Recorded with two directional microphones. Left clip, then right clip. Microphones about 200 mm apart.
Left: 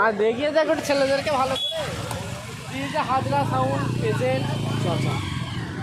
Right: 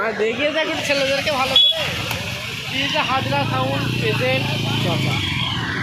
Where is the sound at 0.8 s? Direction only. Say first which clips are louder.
Right 2 dB; 50° left (ahead or behind).